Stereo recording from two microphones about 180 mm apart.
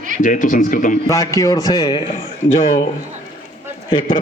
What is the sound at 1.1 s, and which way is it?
Speech, 15° left (ahead or behind).